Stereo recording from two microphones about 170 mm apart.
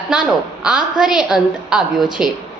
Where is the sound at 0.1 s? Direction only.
5° right (ahead or behind).